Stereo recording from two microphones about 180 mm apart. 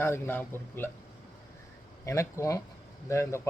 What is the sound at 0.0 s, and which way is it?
Speech, 15° left (ahead or behind).